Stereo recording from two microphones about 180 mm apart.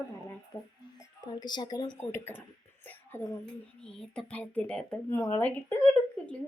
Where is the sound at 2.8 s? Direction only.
15° left (ahead or behind).